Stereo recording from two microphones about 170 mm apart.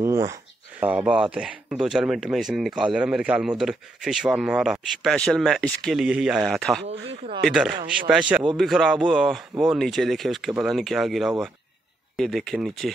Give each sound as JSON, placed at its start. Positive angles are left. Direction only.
{"t": 0.0, "sound": "speech", "side_deg": -15}
{"t": 6.9, "sound": "speech", "side_deg": -35}
{"t": 7.4, "sound": "speech", "side_deg": 0}